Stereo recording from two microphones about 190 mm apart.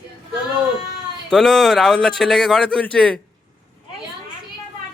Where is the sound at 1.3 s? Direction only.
5° left (ahead or behind).